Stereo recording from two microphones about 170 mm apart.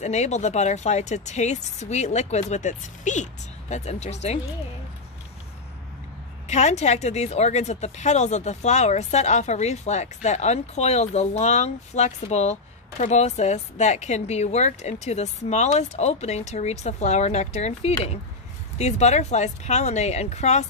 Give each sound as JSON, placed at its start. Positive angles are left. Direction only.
{"t": 0.0, "sound": "speech", "side_deg": 40}
{"t": 6.4, "sound": "a woman's voice", "side_deg": 40}